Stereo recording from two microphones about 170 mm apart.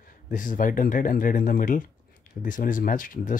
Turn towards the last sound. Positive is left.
turn(degrees=50)  # may be behind; listen again after turning